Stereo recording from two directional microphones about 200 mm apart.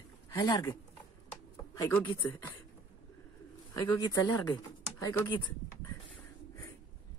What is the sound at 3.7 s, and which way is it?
Speech, 25° left (ahead or behind).